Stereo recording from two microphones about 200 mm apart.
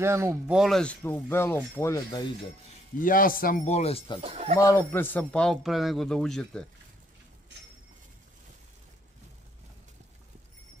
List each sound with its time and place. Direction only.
0.0 s speech: 15° right (ahead or behind)
0.6 s speech: centre (ahead or behind)
3.0 s a man's voice: 45° left (ahead or behind)
4.2 s speech: 30° right (ahead or behind)
4.6 s a man's voice: 15° left (ahead or behind)